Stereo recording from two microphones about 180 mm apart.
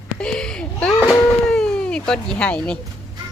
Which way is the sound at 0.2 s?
5° left (ahead or behind).